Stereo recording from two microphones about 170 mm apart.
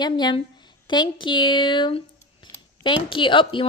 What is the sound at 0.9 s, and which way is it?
Speech, 25° left (ahead or behind).